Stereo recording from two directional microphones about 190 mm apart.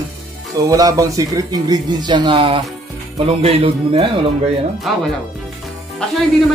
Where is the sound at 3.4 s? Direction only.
30° right (ahead or behind).